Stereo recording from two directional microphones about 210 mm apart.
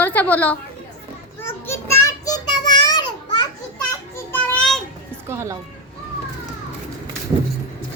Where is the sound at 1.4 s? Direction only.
10° left (ahead or behind).